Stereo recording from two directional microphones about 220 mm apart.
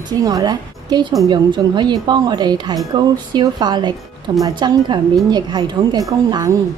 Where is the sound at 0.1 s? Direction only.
15° right (ahead or behind).